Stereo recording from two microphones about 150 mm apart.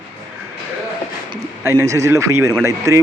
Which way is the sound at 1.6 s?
20° right (ahead or behind).